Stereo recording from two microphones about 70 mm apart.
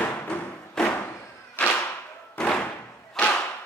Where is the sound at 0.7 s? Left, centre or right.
Centre.